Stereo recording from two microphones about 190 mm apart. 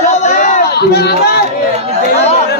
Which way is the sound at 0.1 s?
40° left (ahead or behind).